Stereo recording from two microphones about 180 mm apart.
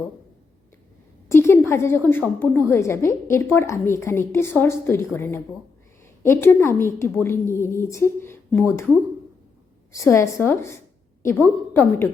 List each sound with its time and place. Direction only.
1.3 s a woman's voice: 15° left (ahead or behind)